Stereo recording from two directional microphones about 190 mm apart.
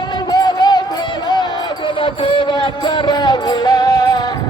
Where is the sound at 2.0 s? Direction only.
25° left (ahead or behind).